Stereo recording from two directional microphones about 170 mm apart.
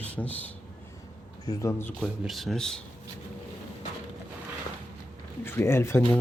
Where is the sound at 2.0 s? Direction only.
Centre (ahead or behind).